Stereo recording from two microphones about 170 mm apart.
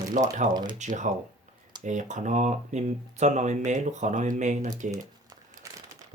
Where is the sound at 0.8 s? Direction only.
45° right (ahead or behind).